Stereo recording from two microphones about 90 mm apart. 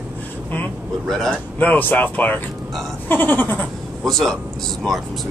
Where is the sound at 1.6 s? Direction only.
20° left (ahead or behind).